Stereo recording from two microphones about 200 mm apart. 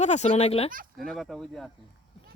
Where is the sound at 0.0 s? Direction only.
35° left (ahead or behind).